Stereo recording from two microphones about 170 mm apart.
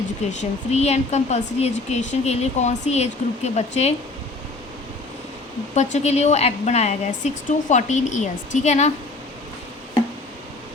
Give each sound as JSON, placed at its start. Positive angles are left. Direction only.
{"t": 0.3, "sound": "speech", "side_deg": 40}
{"t": 5.7, "sound": "a woman's voice", "side_deg": 40}